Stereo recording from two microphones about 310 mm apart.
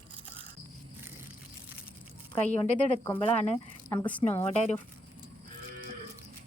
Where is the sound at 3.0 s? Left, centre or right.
Centre.